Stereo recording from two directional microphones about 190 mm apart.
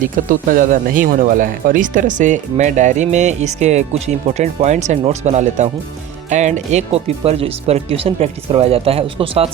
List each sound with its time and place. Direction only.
0.0 s speech: 45° right (ahead or behind)